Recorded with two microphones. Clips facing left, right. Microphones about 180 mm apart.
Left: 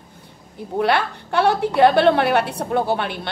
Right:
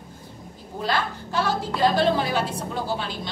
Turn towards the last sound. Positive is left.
turn(degrees=65)  # may be behind; listen again after turning